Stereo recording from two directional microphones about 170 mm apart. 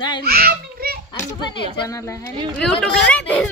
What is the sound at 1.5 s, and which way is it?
Speech, 20° left (ahead or behind).